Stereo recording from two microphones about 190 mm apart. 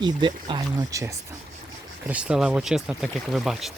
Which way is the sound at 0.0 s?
25° right (ahead or behind).